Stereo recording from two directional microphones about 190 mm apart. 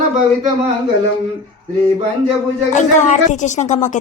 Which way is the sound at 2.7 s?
40° left (ahead or behind).